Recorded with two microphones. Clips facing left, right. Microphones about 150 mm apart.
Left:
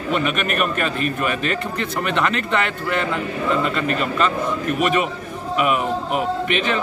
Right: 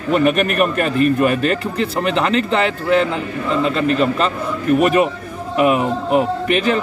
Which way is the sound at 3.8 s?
30° right (ahead or behind).